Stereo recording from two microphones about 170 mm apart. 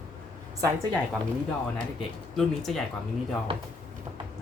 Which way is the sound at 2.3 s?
Centre (ahead or behind).